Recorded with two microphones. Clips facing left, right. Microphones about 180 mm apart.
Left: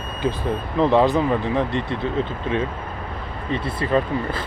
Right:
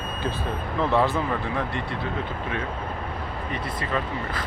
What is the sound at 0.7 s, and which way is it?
Speech, 20° left (ahead or behind).